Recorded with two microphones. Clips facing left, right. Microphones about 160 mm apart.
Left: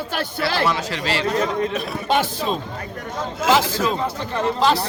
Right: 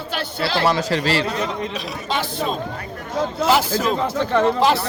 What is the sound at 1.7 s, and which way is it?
Speech, 50° left (ahead or behind).